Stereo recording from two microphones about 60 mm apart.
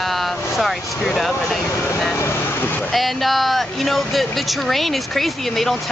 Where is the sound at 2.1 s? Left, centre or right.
Left.